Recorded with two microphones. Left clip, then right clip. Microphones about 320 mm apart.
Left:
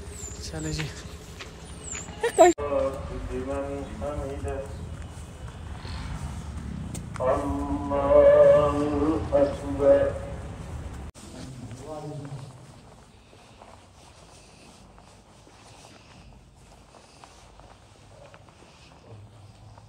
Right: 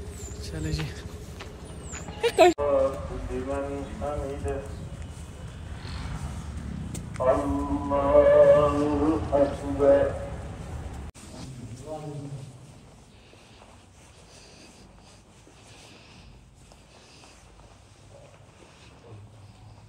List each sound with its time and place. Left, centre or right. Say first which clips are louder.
0.2 s vehicle: left 2 dB; centre
2.2 s speech: left 1 dB; left
2.6 s a sound: right 3 dB; centre